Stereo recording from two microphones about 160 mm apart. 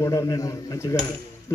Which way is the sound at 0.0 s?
20° left (ahead or behind).